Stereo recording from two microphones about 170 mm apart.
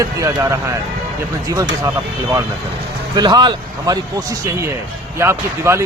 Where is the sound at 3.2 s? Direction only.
25° right (ahead or behind).